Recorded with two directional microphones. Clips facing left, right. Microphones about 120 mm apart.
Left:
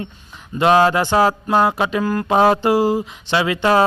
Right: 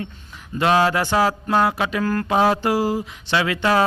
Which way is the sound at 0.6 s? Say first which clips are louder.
Left 4 dB; 25° left (ahead or behind).